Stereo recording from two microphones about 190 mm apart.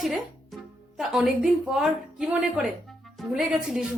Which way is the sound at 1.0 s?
Centre (ahead or behind).